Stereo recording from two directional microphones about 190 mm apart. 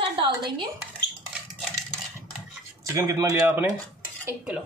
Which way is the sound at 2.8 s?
15° right (ahead or behind).